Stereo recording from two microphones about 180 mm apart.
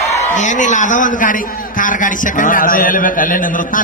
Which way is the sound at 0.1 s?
45° left (ahead or behind).